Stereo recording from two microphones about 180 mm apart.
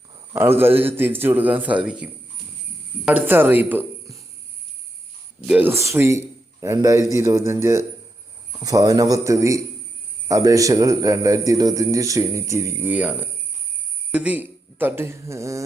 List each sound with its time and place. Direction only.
0.3 s a man's voice: 10° right (ahead or behind)
3.1 s speech: 10° right (ahead or behind)
5.5 s a man's voice: 10° right (ahead or behind)